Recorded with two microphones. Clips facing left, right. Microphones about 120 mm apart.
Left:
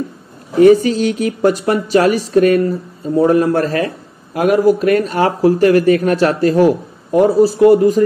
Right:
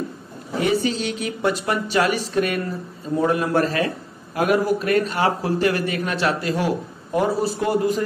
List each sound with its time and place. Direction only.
0.7 s speech: 45° left (ahead or behind)